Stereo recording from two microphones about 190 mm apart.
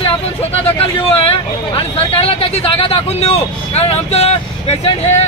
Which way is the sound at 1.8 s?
30° left (ahead or behind).